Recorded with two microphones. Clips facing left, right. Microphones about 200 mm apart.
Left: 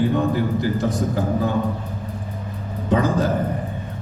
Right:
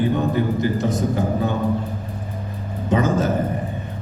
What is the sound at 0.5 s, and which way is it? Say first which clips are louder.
Speech: even; 20° right (ahead or behind).